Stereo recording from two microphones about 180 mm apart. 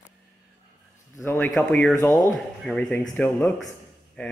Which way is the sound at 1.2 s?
10° left (ahead or behind).